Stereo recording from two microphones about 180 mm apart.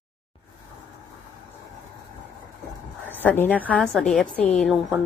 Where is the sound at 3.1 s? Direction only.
10° left (ahead or behind).